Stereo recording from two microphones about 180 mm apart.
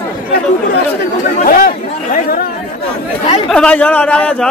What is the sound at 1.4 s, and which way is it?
Chatter, 50° left (ahead or behind).